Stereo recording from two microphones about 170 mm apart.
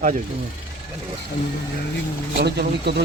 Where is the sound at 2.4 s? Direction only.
75° right (ahead or behind).